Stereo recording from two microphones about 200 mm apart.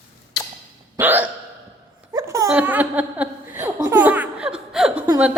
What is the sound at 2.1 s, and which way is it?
Laughter, 15° right (ahead or behind).